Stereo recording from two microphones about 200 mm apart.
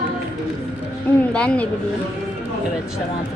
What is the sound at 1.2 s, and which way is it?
Speech, 5° left (ahead or behind).